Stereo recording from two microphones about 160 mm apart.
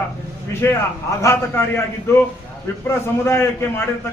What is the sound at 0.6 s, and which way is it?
A man's voice, 15° left (ahead or behind).